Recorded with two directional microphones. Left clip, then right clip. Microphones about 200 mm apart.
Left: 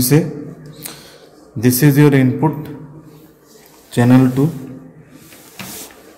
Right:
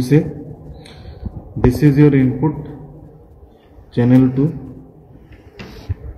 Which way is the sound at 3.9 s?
45° left (ahead or behind).